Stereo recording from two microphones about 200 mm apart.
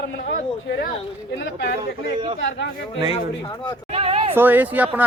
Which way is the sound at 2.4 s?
65° left (ahead or behind).